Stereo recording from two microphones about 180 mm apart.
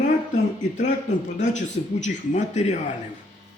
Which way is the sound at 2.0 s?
40° left (ahead or behind).